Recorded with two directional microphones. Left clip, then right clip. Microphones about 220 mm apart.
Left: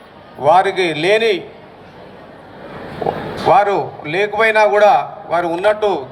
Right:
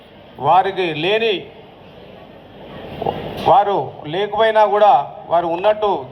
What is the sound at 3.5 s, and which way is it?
A man's voice, 55° left (ahead or behind).